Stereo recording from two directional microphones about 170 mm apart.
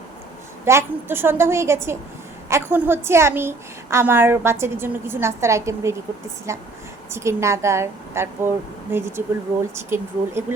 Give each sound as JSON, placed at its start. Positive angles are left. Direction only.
{"t": 0.6, "sound": "a woman's voice", "side_deg": -15}